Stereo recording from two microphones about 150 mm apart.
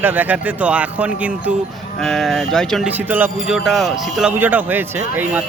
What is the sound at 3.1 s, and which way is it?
A man's voice, 10° right (ahead or behind).